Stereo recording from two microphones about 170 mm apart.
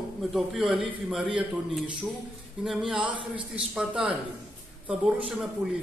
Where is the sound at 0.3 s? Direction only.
Centre (ahead or behind).